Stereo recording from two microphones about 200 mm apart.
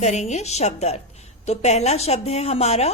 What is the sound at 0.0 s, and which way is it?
Speech, 35° left (ahead or behind).